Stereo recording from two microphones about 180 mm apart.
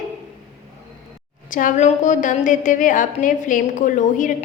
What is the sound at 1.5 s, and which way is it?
A woman's voice, 45° left (ahead or behind).